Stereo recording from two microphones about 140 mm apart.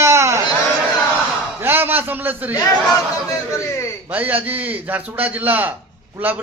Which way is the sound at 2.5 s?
25° left (ahead or behind).